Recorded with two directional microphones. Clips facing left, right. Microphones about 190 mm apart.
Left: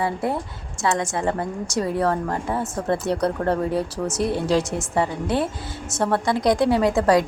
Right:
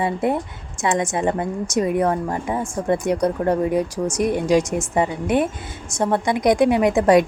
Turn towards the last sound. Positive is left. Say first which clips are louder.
# right 3 dB
turn(degrees=-20)  # may be behind; listen again after turning